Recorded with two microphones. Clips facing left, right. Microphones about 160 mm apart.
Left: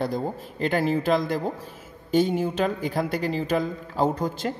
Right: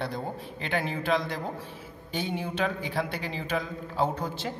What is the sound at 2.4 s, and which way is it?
A man's voice, 40° left (ahead or behind).